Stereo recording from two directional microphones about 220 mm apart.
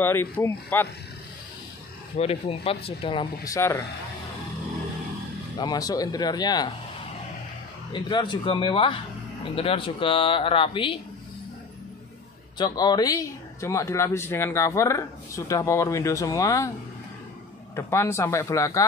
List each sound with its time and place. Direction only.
0.0 s speech: 10° left (ahead or behind)
2.1 s speech: 25° left (ahead or behind)
5.6 s speech: 15° left (ahead or behind)
7.9 s speech: 20° left (ahead or behind)
12.5 s speech: 20° left (ahead or behind)
17.7 s speech: 10° left (ahead or behind)